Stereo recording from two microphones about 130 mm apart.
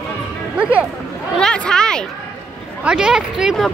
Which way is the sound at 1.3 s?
5° left (ahead or behind).